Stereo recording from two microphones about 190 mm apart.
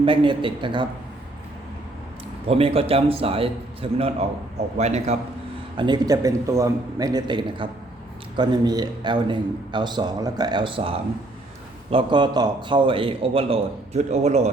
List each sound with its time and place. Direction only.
0.0 s a man's voice: 25° right (ahead or behind)
2.5 s a man's voice: 30° right (ahead or behind)
5.7 s a man's voice: 25° right (ahead or behind)